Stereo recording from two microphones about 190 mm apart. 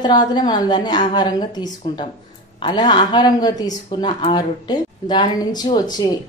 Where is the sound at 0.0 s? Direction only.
20° left (ahead or behind).